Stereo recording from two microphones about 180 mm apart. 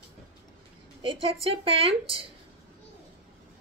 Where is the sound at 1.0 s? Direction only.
30° right (ahead or behind).